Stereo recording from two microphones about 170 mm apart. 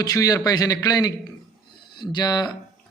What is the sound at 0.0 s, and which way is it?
A man's voice, 20° left (ahead or behind).